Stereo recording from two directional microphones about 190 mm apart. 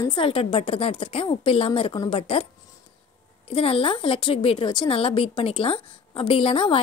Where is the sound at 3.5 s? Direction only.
30° left (ahead or behind).